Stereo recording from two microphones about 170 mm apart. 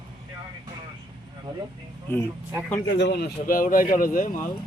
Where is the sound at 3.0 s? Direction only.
80° left; by 4.5 s 50° left (ahead or behind).